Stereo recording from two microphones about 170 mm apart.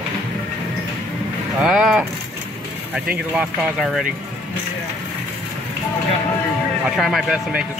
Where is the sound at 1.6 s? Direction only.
5° right (ahead or behind).